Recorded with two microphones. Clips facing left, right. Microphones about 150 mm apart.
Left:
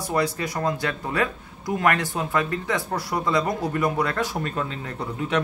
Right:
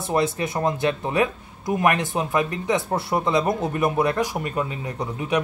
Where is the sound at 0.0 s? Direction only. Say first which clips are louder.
Right 2 dB; 25° right (ahead or behind).